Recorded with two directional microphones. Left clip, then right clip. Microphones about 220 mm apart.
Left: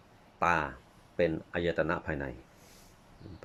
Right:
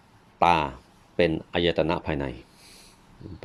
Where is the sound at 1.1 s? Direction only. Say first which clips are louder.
Right 6 dB; 25° right (ahead or behind).